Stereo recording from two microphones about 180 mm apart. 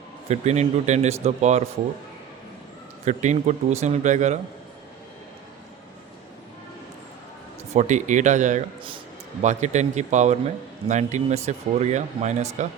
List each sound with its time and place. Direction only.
0.3 s speech: 40° right (ahead or behind)
3.0 s speech: 40° right (ahead or behind)
7.7 s speech: 40° right (ahead or behind)